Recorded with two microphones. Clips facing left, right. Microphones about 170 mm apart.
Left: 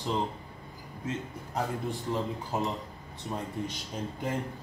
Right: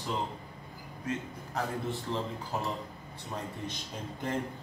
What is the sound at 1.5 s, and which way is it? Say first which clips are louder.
Speech: left 1 dB; 15° left (ahead or behind).